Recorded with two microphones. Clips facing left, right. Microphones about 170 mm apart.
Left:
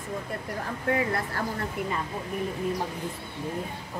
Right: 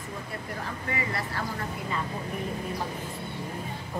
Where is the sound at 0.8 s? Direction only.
50° left (ahead or behind).